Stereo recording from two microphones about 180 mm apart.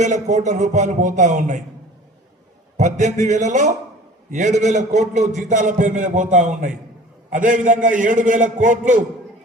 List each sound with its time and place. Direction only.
0.0 s a man's voice: 40° right (ahead or behind)
2.7 s a man's voice: 40° right (ahead or behind)